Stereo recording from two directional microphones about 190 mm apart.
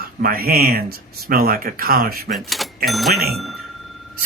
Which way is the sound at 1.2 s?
50° right (ahead or behind).